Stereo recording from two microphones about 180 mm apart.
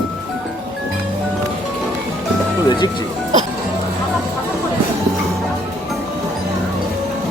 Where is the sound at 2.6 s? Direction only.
25° left (ahead or behind).